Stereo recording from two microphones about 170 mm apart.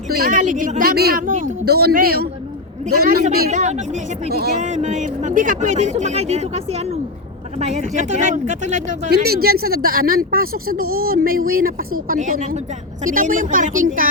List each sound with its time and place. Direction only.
0.2 s speech: 50° right (ahead or behind)
3.5 s speech: 45° right (ahead or behind)
9.0 s speech: 65° right (ahead or behind)